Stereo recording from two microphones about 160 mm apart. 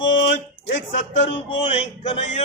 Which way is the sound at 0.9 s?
50° left (ahead or behind).